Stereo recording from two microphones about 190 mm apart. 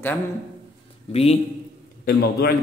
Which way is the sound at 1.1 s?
30° left (ahead or behind).